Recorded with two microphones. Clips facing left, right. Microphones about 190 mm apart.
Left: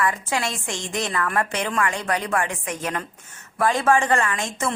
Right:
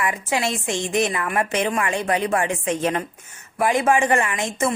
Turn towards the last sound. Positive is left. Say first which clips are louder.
# right 3 dB
turn(degrees=-20)  # may be behind; listen again after turning